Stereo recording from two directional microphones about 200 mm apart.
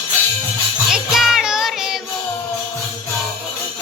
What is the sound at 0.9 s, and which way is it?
Music, centre (ahead or behind).